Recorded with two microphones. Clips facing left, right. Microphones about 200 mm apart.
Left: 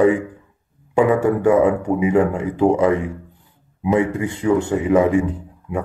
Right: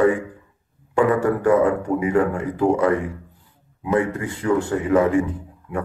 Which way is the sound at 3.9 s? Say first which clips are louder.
Left 2 dB; 20° left (ahead or behind).